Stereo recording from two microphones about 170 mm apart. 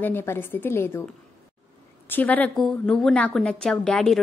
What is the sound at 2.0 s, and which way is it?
A woman's voice, 10° left (ahead or behind).